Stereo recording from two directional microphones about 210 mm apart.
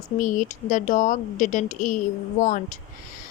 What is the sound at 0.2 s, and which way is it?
Speech, 40° left (ahead or behind).